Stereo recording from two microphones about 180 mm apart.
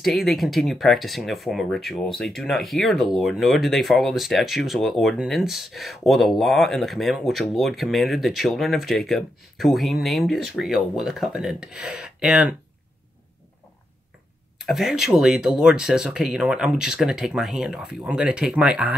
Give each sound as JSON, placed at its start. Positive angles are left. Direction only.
{"t": 0.0, "sound": "speech", "side_deg": 0}
{"t": 14.6, "sound": "speech", "side_deg": 0}